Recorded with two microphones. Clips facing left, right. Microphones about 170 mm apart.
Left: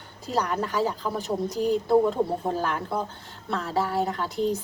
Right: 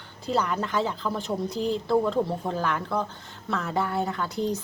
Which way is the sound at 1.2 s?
45° left (ahead or behind).